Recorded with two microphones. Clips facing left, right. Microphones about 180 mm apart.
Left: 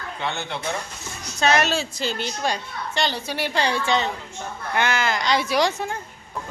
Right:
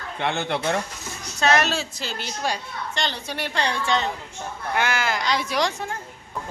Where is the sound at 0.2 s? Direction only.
60° right (ahead or behind).